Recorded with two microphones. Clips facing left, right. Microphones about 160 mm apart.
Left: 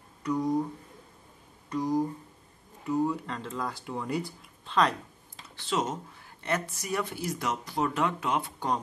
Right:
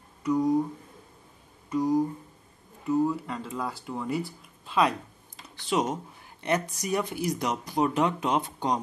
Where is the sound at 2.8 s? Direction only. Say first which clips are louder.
Right 3 dB; centre (ahead or behind).